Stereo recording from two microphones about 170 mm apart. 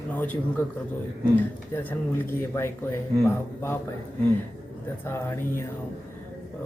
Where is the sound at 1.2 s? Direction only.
10° left (ahead or behind).